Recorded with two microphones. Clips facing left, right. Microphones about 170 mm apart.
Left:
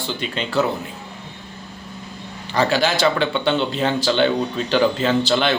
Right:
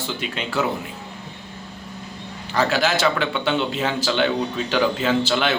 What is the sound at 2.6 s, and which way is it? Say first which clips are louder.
Speech: left 2 dB; centre (ahead or behind).